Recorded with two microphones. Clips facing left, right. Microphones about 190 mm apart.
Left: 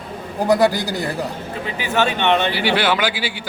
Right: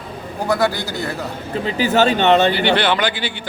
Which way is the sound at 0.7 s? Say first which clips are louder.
Left 2 dB; 35° left (ahead or behind).